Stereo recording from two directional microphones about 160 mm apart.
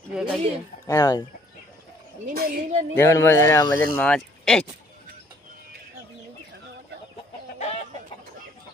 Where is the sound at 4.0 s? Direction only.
5° left (ahead or behind).